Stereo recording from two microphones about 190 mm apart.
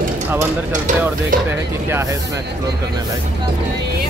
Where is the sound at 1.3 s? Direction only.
45° right (ahead or behind).